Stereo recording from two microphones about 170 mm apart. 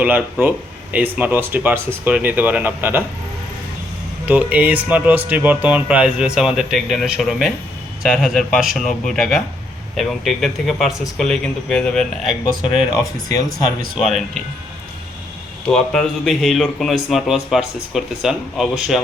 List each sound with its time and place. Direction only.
0.0 s speech: 10° right (ahead or behind)
4.3 s speech: 10° right (ahead or behind)
13.9 s speech: centre (ahead or behind)
15.7 s speech: 5° left (ahead or behind)